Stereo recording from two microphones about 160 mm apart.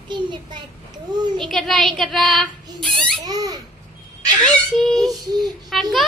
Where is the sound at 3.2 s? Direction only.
25° right (ahead or behind).